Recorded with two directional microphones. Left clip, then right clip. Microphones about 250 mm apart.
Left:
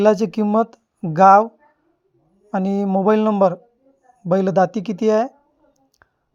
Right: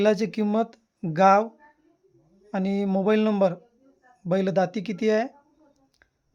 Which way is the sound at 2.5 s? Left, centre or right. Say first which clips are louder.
Left 6 dB; centre.